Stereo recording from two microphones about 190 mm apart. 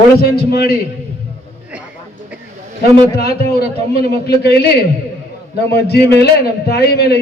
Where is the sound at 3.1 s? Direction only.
55° left (ahead or behind).